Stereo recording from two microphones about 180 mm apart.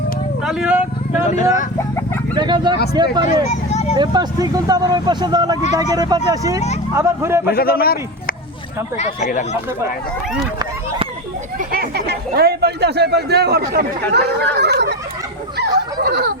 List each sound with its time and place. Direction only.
0.4 s speech: 5° right (ahead or behind)
1.3 s speech: 40° left (ahead or behind)
2.3 s speech: 25° right (ahead or behind)
3.5 s speech: 40° left (ahead or behind)
3.9 s speech: 25° right (ahead or behind)
7.5 s a man's voice: 55° left (ahead or behind)
9.0 s speech: 40° left (ahead or behind)
11.7 s speech: 60° right (ahead or behind)
16.0 s a sound: 60° right (ahead or behind)